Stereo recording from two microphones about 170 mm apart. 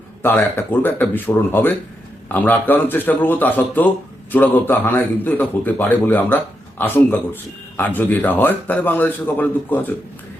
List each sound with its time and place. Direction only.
0.2 s a man's voice: 10° left (ahead or behind)